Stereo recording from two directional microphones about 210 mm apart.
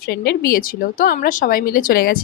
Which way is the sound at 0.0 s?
45° left (ahead or behind).